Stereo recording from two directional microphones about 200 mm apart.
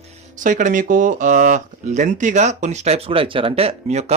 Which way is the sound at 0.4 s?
40° right (ahead or behind).